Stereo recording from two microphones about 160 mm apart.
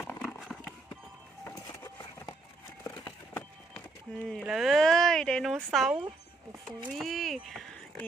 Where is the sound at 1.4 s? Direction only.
15° left (ahead or behind).